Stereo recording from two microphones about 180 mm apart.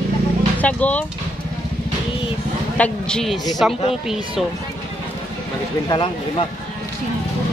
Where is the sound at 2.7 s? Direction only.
5° left (ahead or behind).